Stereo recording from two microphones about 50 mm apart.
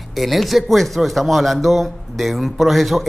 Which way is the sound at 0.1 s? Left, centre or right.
Centre.